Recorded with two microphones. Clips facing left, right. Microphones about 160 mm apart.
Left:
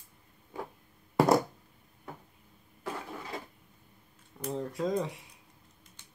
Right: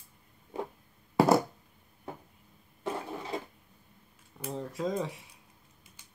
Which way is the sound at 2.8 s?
25° right (ahead or behind).